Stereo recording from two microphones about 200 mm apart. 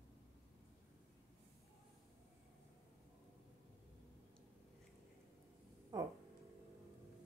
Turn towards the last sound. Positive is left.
turn(degrees=-20)  # may be behind; listen again after turning